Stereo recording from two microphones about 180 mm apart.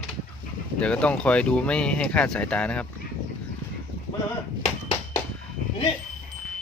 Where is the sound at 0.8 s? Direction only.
5° left (ahead or behind).